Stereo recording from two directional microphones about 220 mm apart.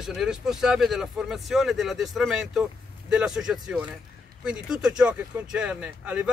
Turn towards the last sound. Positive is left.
turn(degrees=-5)  # may be behind; listen again after turning